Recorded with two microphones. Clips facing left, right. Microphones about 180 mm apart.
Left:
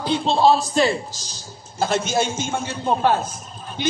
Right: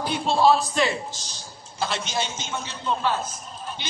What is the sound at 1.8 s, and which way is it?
A man's voice, 45° left (ahead or behind).